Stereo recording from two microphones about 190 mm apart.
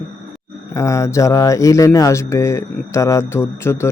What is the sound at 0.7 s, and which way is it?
Speech, 15° left (ahead or behind).